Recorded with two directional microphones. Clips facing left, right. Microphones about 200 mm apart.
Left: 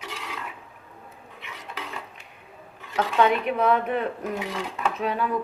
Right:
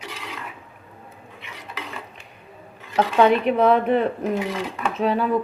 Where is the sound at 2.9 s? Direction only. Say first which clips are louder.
Right 5 dB; 35° right (ahead or behind).